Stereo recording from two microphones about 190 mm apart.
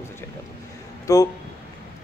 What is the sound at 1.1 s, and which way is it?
Speech, 15° left (ahead or behind).